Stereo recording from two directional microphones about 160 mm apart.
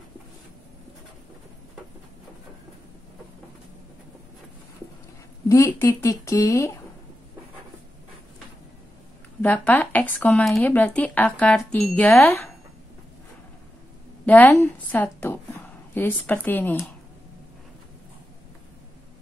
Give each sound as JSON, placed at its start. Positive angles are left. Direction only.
{"t": 5.5, "sound": "speech", "side_deg": 20}
{"t": 9.4, "sound": "speech", "side_deg": 10}
{"t": 14.2, "sound": "speech", "side_deg": 10}